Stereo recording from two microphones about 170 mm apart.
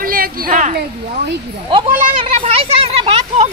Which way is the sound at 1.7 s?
30° right (ahead or behind).